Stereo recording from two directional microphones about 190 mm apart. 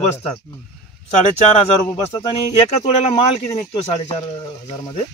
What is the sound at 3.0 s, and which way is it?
Speech, 30° left (ahead or behind).